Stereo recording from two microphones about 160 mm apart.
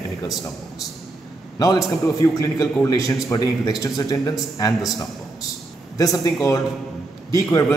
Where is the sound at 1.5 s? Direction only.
20° left (ahead or behind).